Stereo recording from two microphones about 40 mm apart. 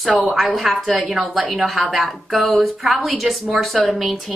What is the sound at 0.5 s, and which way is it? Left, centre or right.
A woman's voice, centre.